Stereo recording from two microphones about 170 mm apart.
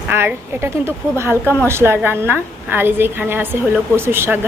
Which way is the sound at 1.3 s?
15° left (ahead or behind).